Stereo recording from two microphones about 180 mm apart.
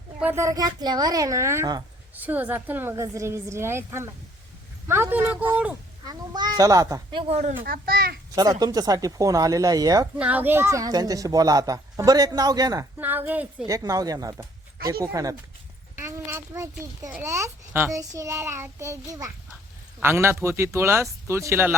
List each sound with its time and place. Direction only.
0.2 s a woman's voice: 15° right (ahead or behind)
6.1 s a woman's voice: 25° right (ahead or behind)
7.6 s a child's voice: 55° right (ahead or behind)
8.4 s a woman's voice: 20° right (ahead or behind)
10.2 s a woman's voice: 10° right (ahead or behind)
13.0 s a child's voice: 10° right (ahead or behind)
13.7 s a woman's voice: 20° right (ahead or behind)